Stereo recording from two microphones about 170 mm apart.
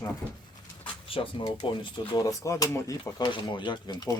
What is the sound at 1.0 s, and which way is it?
Speech, 30° left (ahead or behind).